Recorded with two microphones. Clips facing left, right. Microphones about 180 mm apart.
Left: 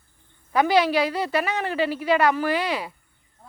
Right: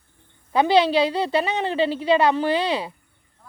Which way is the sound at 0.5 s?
25° right (ahead or behind).